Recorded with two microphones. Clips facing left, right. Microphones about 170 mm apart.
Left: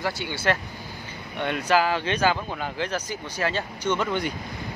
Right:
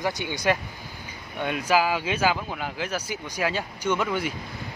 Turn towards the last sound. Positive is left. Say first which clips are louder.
# even
turn(degrees=-5)  # may be behind; listen again after turning